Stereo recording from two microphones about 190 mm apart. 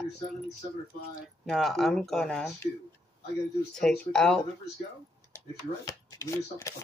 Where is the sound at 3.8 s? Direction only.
5° left (ahead or behind).